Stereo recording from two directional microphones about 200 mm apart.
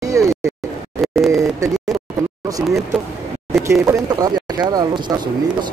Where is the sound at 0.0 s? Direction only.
15° right (ahead or behind).